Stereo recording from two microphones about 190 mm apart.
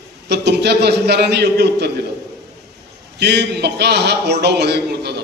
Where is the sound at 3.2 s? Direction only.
60° right (ahead or behind).